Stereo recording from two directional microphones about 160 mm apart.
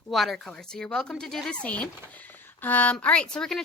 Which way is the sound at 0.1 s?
Centre (ahead or behind).